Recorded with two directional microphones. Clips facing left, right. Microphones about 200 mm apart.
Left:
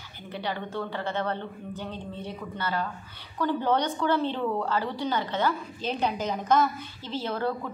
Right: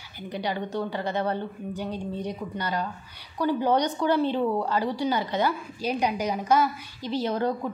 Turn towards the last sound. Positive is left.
turn(degrees=-15)  # may be behind; listen again after turning